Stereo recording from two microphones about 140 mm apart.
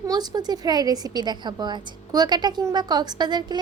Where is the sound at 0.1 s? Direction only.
30° right (ahead or behind).